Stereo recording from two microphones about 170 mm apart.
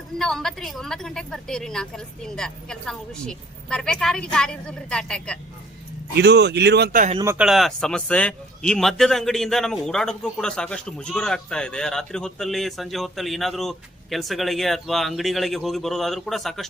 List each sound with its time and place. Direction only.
0.2 s a man's voice: centre (ahead or behind)
6.1 s speech: 75° right (ahead or behind)
7.3 s a man's voice: centre (ahead or behind)